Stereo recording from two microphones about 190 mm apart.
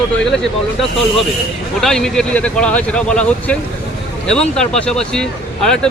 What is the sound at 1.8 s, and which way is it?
Speech, centre (ahead or behind).